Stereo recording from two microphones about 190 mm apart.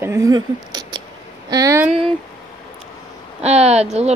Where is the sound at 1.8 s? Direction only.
Centre (ahead or behind).